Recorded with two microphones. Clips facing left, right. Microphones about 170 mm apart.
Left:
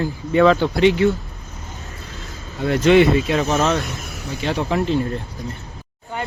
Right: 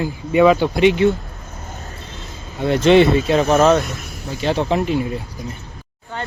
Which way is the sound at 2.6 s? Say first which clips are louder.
Right 1 dB; 25° right (ahead or behind).